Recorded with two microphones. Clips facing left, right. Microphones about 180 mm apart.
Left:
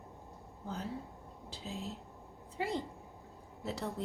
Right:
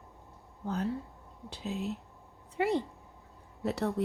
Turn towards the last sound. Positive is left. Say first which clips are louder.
# right 8 dB
turn(degrees=-65)  # may be behind; listen again after turning